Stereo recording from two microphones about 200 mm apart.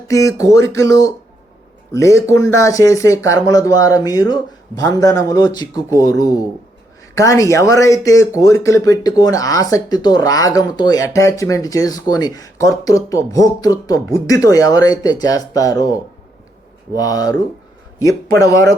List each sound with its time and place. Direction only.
0.1 s speech: 15° left (ahead or behind)